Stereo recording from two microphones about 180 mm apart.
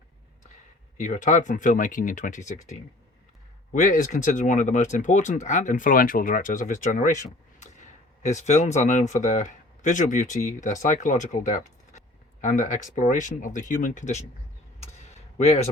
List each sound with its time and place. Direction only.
0.9 s speech: 45° left (ahead or behind)
15.4 s a man's voice: 35° left (ahead or behind)